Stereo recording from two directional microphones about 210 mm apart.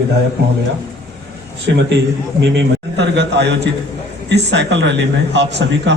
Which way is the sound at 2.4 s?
55° right (ahead or behind).